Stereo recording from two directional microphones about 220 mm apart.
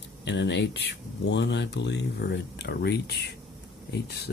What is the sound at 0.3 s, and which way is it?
Speech, 50° left (ahead or behind).